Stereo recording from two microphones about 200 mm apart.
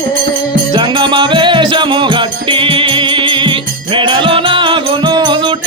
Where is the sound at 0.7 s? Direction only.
25° right (ahead or behind).